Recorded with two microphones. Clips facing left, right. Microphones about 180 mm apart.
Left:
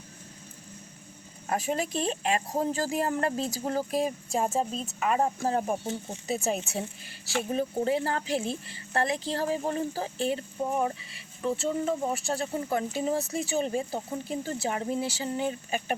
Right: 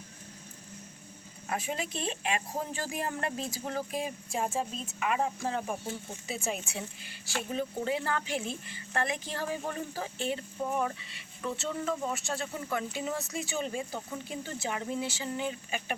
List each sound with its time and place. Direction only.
1.5 s speech: 40° left (ahead or behind)